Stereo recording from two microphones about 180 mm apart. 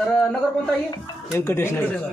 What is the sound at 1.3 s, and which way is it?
Speech, 15° left (ahead or behind).